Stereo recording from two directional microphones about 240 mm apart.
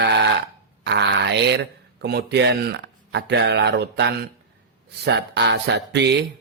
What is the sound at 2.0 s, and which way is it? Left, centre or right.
Speech, right.